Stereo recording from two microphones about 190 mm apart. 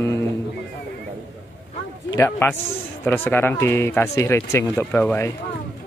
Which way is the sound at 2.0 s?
15° left (ahead or behind).